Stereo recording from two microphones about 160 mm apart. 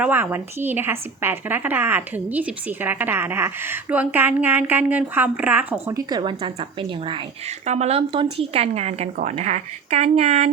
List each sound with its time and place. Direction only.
0.0 s a woman's voice: 10° right (ahead or behind)
6.1 s speech: 30° right (ahead or behind)
7.6 s speech: 45° right (ahead or behind)